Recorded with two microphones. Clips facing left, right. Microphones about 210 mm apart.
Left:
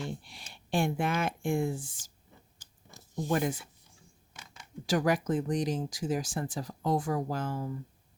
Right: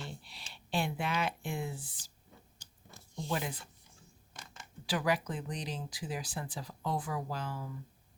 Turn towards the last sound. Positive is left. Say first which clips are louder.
# left 6 dB
turn(degrees=45)  # may be behind; listen again after turning